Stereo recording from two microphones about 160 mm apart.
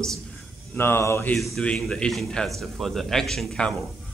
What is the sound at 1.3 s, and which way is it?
Speech, centre (ahead or behind).